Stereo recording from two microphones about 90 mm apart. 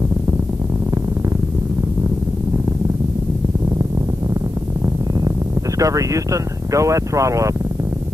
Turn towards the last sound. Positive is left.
turn(degrees=-35)  # may be behind; listen again after turning